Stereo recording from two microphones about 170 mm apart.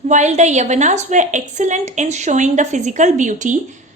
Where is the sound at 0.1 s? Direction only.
45° right (ahead or behind).